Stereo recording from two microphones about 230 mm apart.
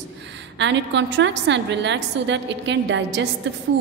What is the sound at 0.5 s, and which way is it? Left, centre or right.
A woman's voice, right.